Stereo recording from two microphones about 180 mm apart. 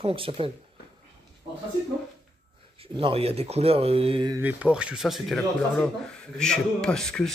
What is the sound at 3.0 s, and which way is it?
A man's voice, 30° right (ahead or behind).